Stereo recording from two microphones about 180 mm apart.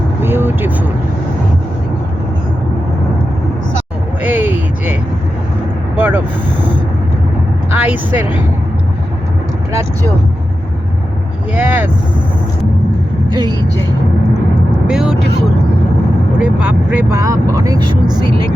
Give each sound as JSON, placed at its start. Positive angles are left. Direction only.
{"t": 0.2, "sound": "vehicle", "side_deg": -10}
{"t": 4.2, "sound": "a sound", "side_deg": -10}
{"t": 6.0, "sound": "vehicle", "side_deg": -10}
{"t": 7.7, "sound": "speech", "side_deg": -10}
{"t": 11.5, "sound": "speech", "side_deg": -10}
{"t": 13.3, "sound": "speech", "side_deg": -20}
{"t": 14.8, "sound": "speech", "side_deg": 0}
{"t": 16.4, "sound": "speech", "side_deg": -10}